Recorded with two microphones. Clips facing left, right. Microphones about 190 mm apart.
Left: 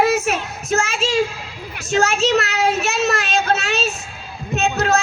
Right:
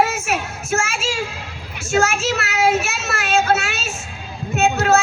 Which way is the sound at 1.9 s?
35° left (ahead or behind).